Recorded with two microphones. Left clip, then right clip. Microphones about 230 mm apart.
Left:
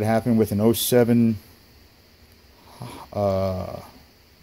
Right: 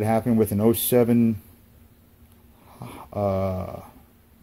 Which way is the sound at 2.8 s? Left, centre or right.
Centre.